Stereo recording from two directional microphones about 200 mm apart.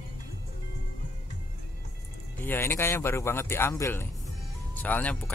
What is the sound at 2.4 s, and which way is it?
Speech, 10° left (ahead or behind).